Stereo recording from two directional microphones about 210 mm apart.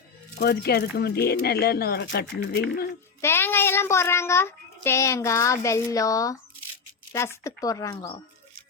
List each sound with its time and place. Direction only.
0.3 s speech: 50° left (ahead or behind)
3.2 s child singing: 10° left (ahead or behind)